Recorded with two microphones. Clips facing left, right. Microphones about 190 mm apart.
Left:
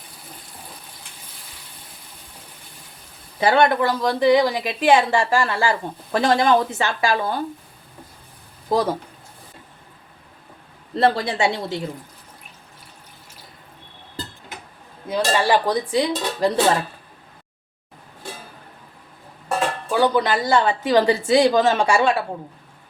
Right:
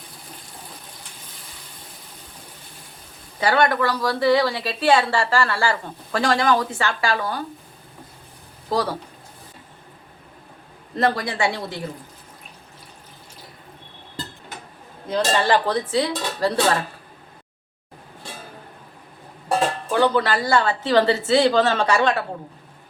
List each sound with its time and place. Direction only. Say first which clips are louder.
3.4 s speech: left 2 dB; 20° left (ahead or behind)
8.7 s speech: left 3 dB; 20° left (ahead or behind)
10.9 s speech: left 3 dB; 25° left (ahead or behind)
15.0 s speech: left 1 dB; 5° left (ahead or behind)
19.9 s speech: left 1 dB; 15° left (ahead or behind)